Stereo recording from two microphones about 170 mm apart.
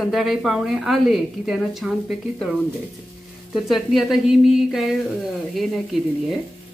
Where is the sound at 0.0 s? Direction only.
Centre (ahead or behind).